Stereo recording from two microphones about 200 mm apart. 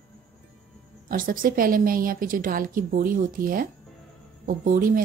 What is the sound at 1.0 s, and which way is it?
A woman's voice, 45° right (ahead or behind).